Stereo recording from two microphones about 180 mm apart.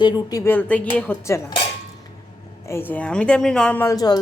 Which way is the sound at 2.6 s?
10° left (ahead or behind).